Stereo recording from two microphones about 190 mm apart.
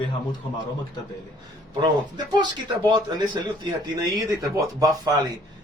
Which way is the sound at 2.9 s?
20° right (ahead or behind).